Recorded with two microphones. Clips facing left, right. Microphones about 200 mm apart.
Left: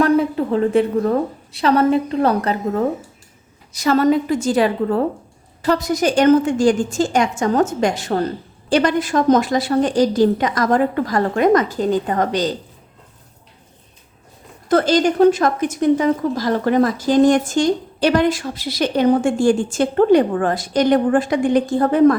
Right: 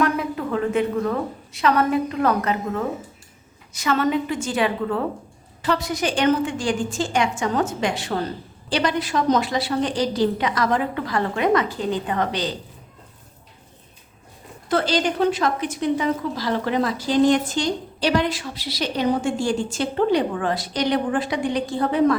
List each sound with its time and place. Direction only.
0.0 s a sound: 30° left (ahead or behind)
1.5 s a woman's voice: 30° left (ahead or behind)
14.7 s a woman's voice: 45° left (ahead or behind)